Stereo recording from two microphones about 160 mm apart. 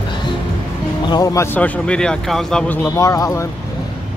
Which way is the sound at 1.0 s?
25° left (ahead or behind).